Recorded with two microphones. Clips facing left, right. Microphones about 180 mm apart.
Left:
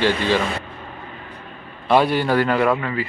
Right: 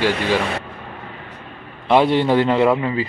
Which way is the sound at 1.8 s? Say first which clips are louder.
Right 2 dB; 20° right (ahead or behind).